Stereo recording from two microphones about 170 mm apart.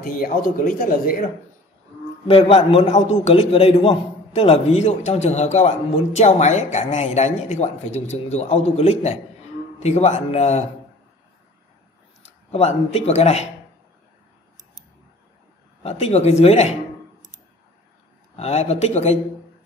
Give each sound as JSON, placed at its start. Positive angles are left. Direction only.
{"t": 0.0, "sound": "speech", "side_deg": 55}
{"t": 2.2, "sound": "speech", "side_deg": 35}
{"t": 12.4, "sound": "speech", "side_deg": 40}
{"t": 15.8, "sound": "speech", "side_deg": 40}
{"t": 18.3, "sound": "speech", "side_deg": 40}